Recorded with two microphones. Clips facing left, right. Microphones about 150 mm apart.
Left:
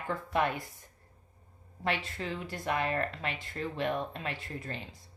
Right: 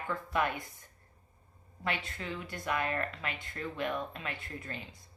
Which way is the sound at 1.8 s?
35° left (ahead or behind).